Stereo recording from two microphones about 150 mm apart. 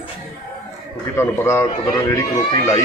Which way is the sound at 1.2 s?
15° left (ahead or behind).